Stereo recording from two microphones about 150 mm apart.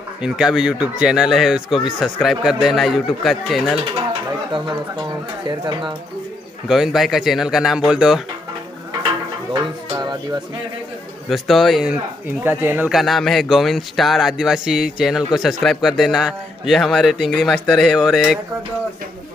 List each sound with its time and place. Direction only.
0.2 s speech: 5° right (ahead or behind)
3.9 s speech: 30° right (ahead or behind)
6.7 s speech: centre (ahead or behind)
9.5 s a sound: 30° right (ahead or behind)
11.2 s speech: centre (ahead or behind)
12.9 s speech: centre (ahead or behind)